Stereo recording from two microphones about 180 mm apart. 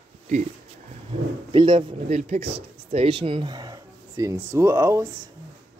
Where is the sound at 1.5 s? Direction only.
30° right (ahead or behind).